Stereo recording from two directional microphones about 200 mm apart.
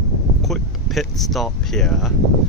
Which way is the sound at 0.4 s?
Centre (ahead or behind).